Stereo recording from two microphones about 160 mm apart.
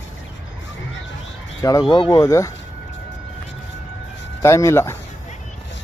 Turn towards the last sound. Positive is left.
turn(degrees=15)  # may be behind; listen again after turning